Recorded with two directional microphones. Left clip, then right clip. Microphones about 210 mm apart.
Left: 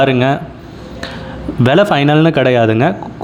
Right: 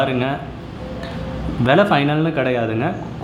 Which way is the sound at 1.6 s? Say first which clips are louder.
Left 4 dB; 35° left (ahead or behind).